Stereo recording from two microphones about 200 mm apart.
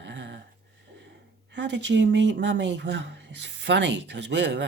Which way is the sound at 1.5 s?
65° right (ahead or behind).